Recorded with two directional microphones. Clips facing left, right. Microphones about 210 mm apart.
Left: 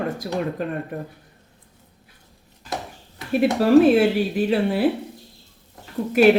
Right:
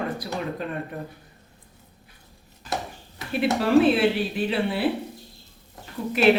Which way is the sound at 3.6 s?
40° left (ahead or behind).